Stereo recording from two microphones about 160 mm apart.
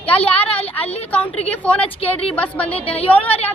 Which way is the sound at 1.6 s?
5° left (ahead or behind).